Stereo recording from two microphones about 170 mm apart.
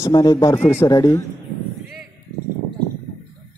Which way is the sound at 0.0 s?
25° left (ahead or behind).